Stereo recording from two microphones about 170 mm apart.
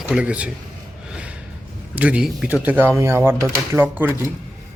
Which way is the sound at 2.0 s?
5° right (ahead or behind).